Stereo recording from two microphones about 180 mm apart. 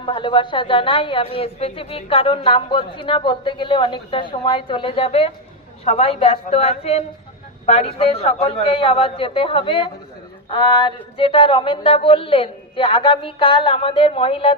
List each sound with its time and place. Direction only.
0.0 s a woman's voice: 25° left (ahead or behind)